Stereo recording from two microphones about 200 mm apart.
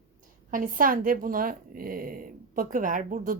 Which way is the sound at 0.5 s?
45° right (ahead or behind).